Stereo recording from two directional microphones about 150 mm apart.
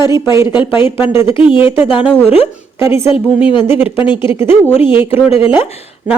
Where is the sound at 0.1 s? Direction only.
20° right (ahead or behind).